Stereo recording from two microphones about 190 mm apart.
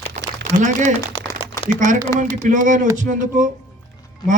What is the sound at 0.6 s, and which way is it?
Speech, 40° right (ahead or behind).